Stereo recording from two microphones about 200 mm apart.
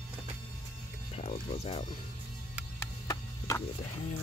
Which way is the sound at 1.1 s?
30° left (ahead or behind).